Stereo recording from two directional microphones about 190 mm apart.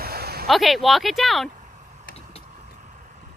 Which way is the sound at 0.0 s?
55° right (ahead or behind).